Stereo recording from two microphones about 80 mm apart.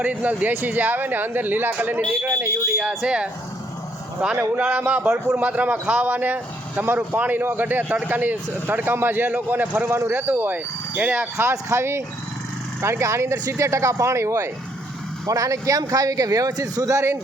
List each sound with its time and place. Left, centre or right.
0.0 s speech: centre
2.2 s speech: right
3.0 s speech: centre
4.4 s speech: centre
5.1 s speech: right
5.5 s speech: centre
11.3 s speech: right